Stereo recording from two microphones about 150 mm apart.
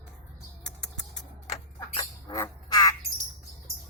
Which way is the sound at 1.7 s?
30° left (ahead or behind).